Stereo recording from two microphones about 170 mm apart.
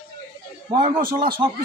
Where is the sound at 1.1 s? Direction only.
30° right (ahead or behind).